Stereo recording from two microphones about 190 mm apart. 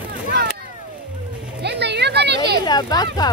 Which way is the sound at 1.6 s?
60° right (ahead or behind).